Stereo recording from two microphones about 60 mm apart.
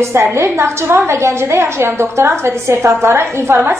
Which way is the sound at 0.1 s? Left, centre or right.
Right.